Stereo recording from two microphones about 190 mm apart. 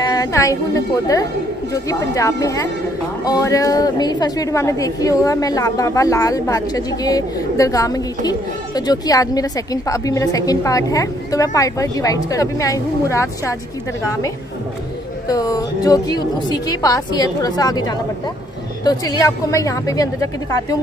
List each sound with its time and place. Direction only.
0.0 s a woman's voice: 20° left (ahead or behind)
15.2 s a woman's voice: 20° left (ahead or behind)